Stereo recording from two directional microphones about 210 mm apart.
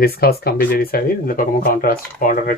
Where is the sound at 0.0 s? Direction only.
45° left (ahead or behind).